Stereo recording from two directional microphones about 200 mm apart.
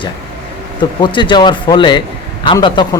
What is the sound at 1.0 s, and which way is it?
Speech, 25° left (ahead or behind).